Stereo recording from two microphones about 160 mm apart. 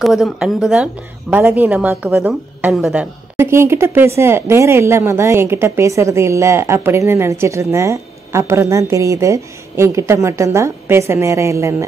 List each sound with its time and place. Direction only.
0.0 s speech: centre (ahead or behind)
3.3 s speech: 15° right (ahead or behind)